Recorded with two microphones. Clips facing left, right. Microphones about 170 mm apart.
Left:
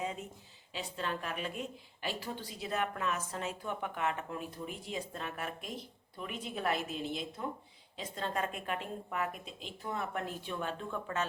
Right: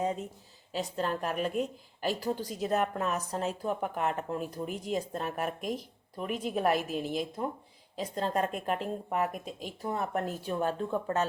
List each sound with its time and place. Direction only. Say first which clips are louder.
0.7 s a woman's voice: right 6 dB; 40° right (ahead or behind)
7.0 s a woman's voice: right 5 dB; 5° right (ahead or behind)
7.9 s speech: right 6 dB; 40° right (ahead or behind)